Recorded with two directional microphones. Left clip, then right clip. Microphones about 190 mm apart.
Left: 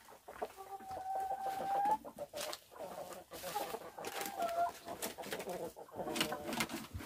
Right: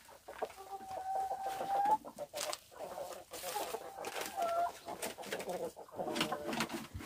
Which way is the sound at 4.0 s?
20° left (ahead or behind).